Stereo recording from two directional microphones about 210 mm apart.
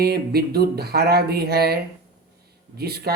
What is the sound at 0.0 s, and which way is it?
Speech, 50° right (ahead or behind).